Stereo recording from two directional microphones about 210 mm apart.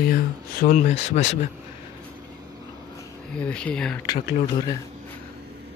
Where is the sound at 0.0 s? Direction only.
45° left (ahead or behind).